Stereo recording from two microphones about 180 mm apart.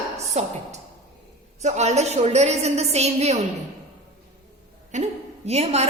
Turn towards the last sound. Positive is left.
turn(degrees=-35)  # may be behind; listen again after turning